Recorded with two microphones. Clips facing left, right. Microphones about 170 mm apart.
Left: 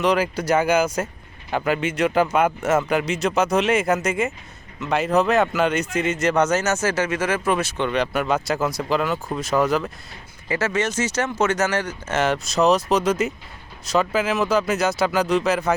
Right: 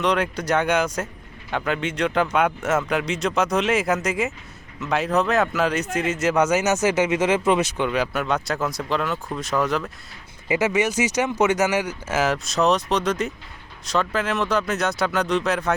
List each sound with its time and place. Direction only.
0.0 s a man's voice: 5° left (ahead or behind); by 7.9 s 20° right (ahead or behind)
7.9 s a man's voice: 5° right (ahead or behind)
10.5 s a man's voice: 15° right (ahead or behind); by 15.7 s centre (ahead or behind)